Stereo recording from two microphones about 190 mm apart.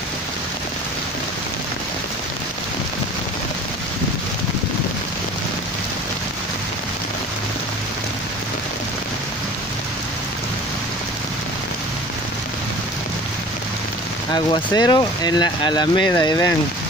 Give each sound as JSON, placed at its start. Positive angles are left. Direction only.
{"t": 14.3, "sound": "speech", "side_deg": 20}